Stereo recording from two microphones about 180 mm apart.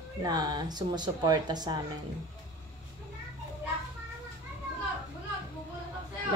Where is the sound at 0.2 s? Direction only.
20° right (ahead or behind).